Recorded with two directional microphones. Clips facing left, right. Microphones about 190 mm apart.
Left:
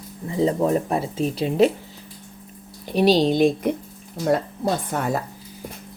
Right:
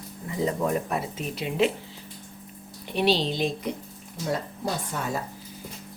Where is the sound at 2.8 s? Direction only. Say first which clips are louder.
Left 7 dB; 40° left (ahead or behind); by 5.0 s 55° left (ahead or behind).